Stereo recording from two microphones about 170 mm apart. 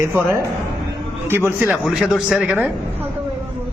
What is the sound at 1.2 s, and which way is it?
Speech, 15° right (ahead or behind).